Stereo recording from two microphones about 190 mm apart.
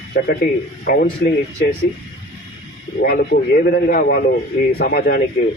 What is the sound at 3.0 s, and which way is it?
A man's voice, 60° left (ahead or behind).